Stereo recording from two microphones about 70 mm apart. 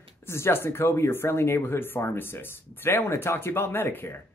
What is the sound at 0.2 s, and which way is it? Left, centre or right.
Speech, left.